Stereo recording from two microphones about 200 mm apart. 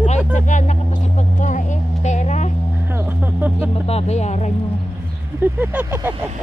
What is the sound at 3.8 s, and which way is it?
Speech, 30° left (ahead or behind).